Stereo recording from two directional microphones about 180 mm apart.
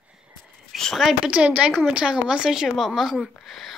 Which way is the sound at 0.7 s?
Centre (ahead or behind).